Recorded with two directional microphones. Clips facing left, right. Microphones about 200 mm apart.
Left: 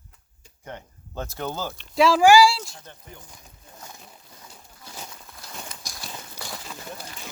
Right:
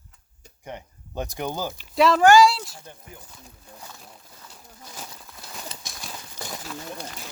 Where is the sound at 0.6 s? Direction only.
15° right (ahead or behind).